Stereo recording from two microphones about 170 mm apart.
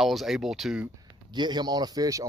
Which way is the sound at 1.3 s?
25° right (ahead or behind).